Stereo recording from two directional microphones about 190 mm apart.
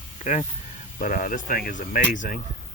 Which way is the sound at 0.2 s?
40° left (ahead or behind).